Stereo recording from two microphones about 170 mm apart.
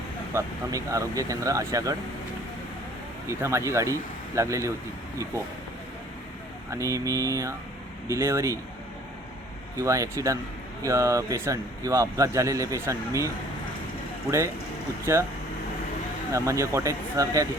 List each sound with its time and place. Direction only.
0.3 s speech: 20° right (ahead or behind)
3.2 s speech: 15° right (ahead or behind)
6.7 s speech: 20° right (ahead or behind)
9.7 s speech: 20° right (ahead or behind)
16.3 s speech: 15° right (ahead or behind)